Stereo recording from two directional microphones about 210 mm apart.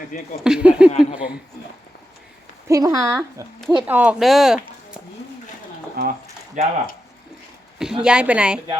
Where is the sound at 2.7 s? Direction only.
15° right (ahead or behind).